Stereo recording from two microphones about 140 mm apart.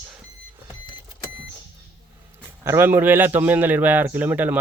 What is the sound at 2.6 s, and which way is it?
A man's voice, 20° right (ahead or behind).